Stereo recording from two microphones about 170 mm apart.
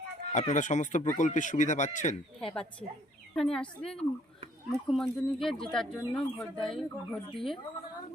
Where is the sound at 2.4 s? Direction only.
5° left (ahead or behind).